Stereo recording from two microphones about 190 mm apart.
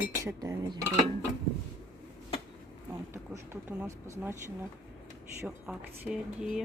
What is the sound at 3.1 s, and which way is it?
Speech, 10° right (ahead or behind).